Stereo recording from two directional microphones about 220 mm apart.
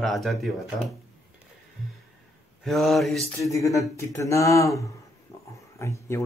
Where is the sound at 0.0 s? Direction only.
Centre (ahead or behind).